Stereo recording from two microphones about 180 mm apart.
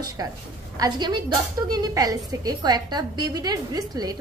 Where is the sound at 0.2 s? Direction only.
20° right (ahead or behind).